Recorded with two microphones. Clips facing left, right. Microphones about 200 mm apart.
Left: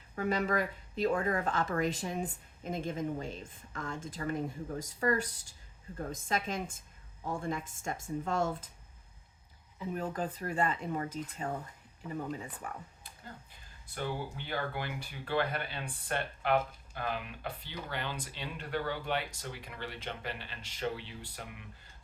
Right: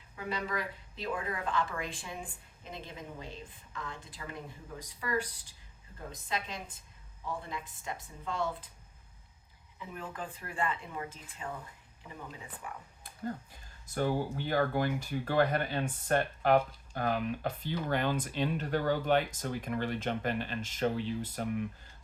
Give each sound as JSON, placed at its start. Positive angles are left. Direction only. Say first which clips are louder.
{"t": 0.2, "sound": "speech", "louder": "left 5 dB", "side_deg": 45}
{"t": 9.7, "sound": "speech", "louder": "left 6 dB", "side_deg": 40}
{"t": 12.6, "sound": "speech", "louder": "right 1 dB", "side_deg": 45}
{"t": 13.8, "sound": "speech", "louder": "right 6 dB", "side_deg": -45}